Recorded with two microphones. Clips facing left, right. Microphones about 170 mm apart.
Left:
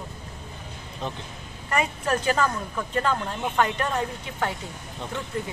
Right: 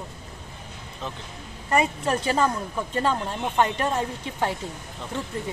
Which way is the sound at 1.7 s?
25° right (ahead or behind).